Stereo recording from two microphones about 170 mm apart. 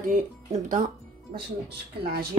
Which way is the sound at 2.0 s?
65° right (ahead or behind).